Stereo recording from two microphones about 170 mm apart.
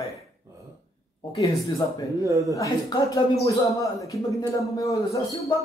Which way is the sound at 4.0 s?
20° left (ahead or behind).